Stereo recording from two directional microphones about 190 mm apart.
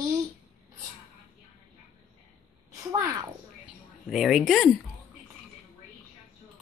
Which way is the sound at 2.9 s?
15° right (ahead or behind).